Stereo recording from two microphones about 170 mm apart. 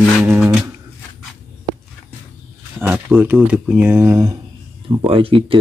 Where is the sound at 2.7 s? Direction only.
10° right (ahead or behind).